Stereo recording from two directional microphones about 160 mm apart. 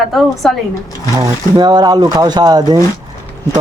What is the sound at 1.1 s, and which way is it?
Speech, 25° right (ahead or behind).